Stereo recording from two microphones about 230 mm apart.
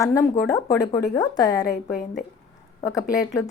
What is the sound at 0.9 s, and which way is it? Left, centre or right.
Speech, left.